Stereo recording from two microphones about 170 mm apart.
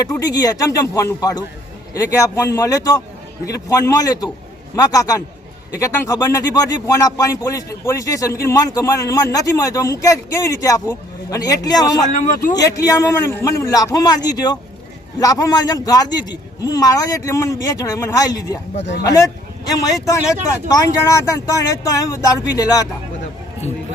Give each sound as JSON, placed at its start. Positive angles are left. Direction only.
{"t": 0.1, "sound": "speech", "side_deg": 20}